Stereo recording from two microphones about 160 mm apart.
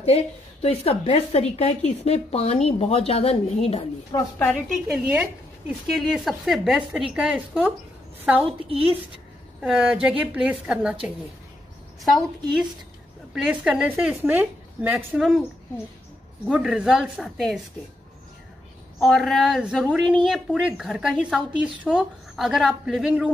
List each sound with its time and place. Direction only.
0.0 s a woman's voice: 40° left (ahead or behind)
4.1 s a woman's voice: 25° left (ahead or behind)
5.0 s a woman's voice: 10° right (ahead or behind)
8.6 s a woman's voice: 35° right (ahead or behind)
9.6 s a woman's voice: 5° right (ahead or behind)
12.0 s a woman's voice: centre (ahead or behind)
16.4 s a woman's voice: 5° right (ahead or behind)
18.9 s a woman's voice: centre (ahead or behind)